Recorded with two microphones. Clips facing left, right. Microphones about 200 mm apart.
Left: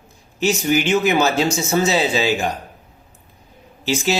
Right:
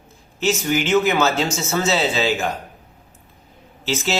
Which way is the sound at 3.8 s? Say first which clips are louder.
Left 3 dB; 15° left (ahead or behind).